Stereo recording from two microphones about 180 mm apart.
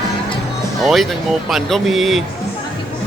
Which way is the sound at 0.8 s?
Centre (ahead or behind).